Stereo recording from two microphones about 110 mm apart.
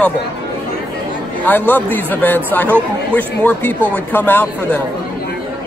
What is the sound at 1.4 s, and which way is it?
Speech, 15° left (ahead or behind).